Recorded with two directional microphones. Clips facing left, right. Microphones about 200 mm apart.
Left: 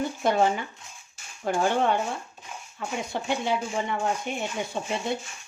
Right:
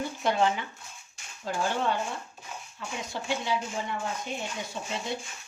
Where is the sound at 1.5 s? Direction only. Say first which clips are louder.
Left 6 dB; 60° left (ahead or behind).